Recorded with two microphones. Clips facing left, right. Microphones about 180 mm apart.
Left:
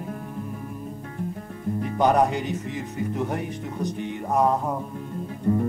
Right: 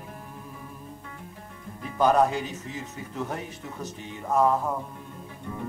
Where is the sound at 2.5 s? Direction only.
15° left (ahead or behind).